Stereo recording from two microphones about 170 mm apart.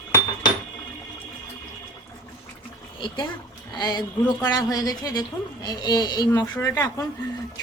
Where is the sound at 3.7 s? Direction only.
25° left (ahead or behind).